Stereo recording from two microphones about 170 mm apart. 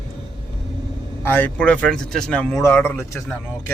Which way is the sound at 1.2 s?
10° left (ahead or behind).